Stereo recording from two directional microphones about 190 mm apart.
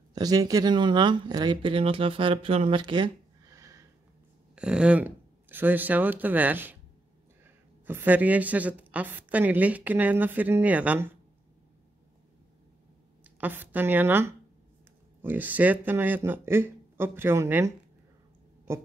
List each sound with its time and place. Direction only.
0.1 s speech: 20° right (ahead or behind)
3.5 s snort: 15° right (ahead or behind)
4.6 s speech: 5° right (ahead or behind)
7.8 s a woman's voice: 10° right (ahead or behind)
13.4 s a woman's voice: 10° right (ahead or behind)